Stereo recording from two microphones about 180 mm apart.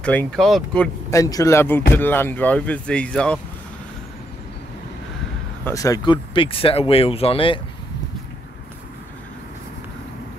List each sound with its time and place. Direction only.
0.0 s speech: 10° left (ahead or behind)
1.1 s speech: 20° left (ahead or behind)
5.7 s speech: 20° left (ahead or behind)